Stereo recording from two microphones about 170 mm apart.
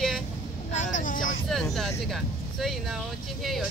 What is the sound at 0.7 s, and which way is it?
Speech, 45° left (ahead or behind).